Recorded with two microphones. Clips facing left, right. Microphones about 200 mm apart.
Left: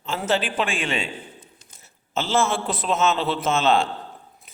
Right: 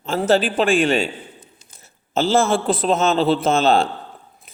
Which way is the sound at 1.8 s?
35° right (ahead or behind).